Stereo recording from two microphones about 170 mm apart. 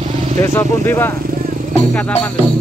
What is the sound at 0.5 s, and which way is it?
Speech, 10° left (ahead or behind).